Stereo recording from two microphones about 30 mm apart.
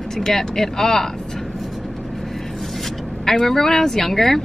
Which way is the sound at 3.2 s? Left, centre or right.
Centre.